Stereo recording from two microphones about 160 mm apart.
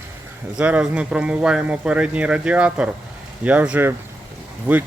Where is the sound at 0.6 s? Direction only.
5° right (ahead or behind).